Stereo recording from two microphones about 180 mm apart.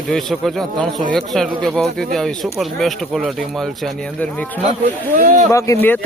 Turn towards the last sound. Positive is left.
turn(degrees=15)  # may be behind; listen again after turning